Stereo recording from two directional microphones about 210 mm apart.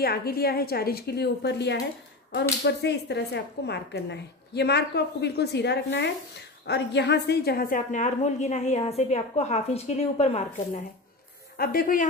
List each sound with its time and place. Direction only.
0.0 s a woman's voice: 45° left (ahead or behind); by 10.8 s 30° left (ahead or behind)
11.5 s a woman's voice: 45° left (ahead or behind)